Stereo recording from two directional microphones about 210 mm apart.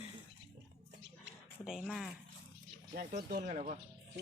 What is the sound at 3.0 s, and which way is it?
Speech, 40° right (ahead or behind).